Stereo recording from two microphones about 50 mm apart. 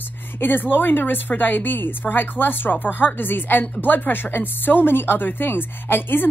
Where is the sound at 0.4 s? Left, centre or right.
Left.